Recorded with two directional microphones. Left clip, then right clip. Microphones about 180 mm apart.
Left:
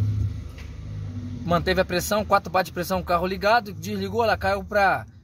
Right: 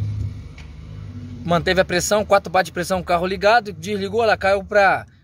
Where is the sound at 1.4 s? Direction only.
30° right (ahead or behind).